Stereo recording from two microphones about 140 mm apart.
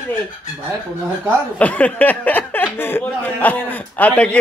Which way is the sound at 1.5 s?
10° left (ahead or behind).